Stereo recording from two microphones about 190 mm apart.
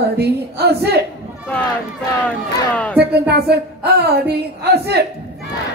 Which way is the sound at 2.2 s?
5° left (ahead or behind).